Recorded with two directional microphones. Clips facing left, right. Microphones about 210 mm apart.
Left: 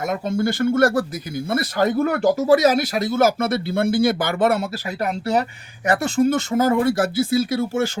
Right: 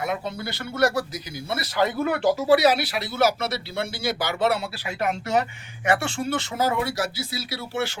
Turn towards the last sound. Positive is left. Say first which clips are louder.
# left 8 dB
turn(degrees=50)  # may be behind; listen again after turning